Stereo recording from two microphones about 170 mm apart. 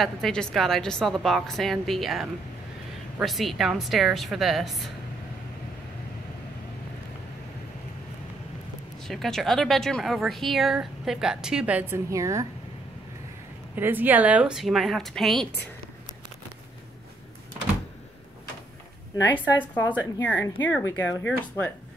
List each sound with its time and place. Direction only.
0.0 s speech: 5° left (ahead or behind)
9.0 s speech: centre (ahead or behind); by 12.4 s 20° right (ahead or behind)
13.7 s speech: 10° right (ahead or behind)
19.7 s speech: 10° left (ahead or behind)